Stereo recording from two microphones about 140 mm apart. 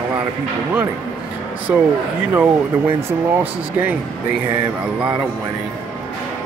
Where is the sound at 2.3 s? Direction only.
15° right (ahead or behind).